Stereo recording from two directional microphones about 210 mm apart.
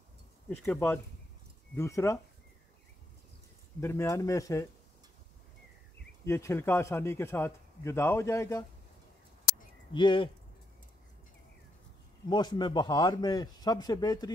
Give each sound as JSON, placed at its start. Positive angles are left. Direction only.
{"t": 0.5, "sound": "a man's voice", "side_deg": 10}
{"t": 3.8, "sound": "a man's voice", "side_deg": 10}
{"t": 6.2, "sound": "a man's voice", "side_deg": 15}
{"t": 9.9, "sound": "a man's voice", "side_deg": 25}
{"t": 12.3, "sound": "a man's voice", "side_deg": 20}